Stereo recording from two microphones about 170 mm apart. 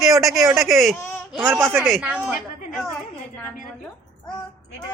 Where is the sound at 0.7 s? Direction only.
Centre (ahead or behind).